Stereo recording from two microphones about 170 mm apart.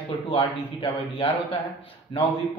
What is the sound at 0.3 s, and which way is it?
Speech, 30° left (ahead or behind).